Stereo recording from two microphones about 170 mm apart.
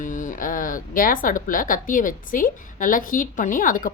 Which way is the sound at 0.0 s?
50° left (ahead or behind).